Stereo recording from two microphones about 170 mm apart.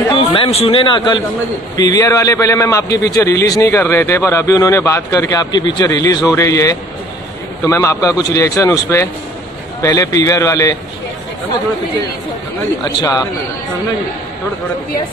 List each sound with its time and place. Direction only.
0.3 s a man's voice: 35° left (ahead or behind)
12.8 s a man's voice: 20° left (ahead or behind)